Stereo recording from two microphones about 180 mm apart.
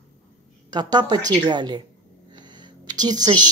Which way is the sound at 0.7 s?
25° right (ahead or behind).